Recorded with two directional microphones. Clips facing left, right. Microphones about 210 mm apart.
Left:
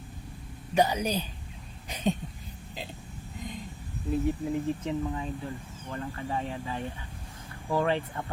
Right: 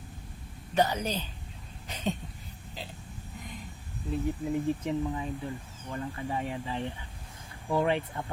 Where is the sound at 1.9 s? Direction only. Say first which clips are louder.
Left 4 dB; 15° left (ahead or behind).